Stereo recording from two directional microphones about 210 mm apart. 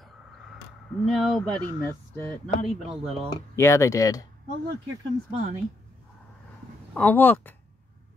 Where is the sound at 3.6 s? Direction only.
15° left (ahead or behind).